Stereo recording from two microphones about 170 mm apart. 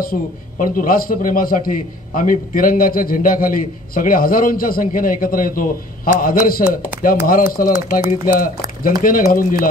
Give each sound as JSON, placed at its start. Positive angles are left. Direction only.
{"t": 0.0, "sound": "a man's voice", "side_deg": 55}